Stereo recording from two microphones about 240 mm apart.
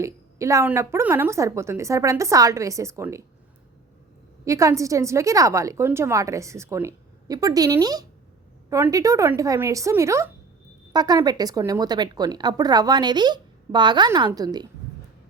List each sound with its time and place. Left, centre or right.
0.0 s speech: centre
4.4 s speech: centre